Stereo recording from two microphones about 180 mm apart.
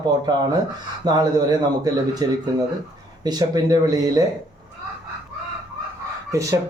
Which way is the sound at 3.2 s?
20° right (ahead or behind).